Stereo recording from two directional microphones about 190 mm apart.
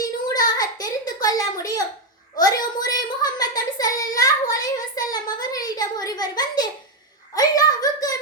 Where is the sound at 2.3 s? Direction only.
20° left (ahead or behind).